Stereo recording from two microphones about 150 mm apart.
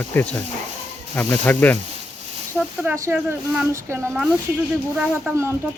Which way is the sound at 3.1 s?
15° right (ahead or behind).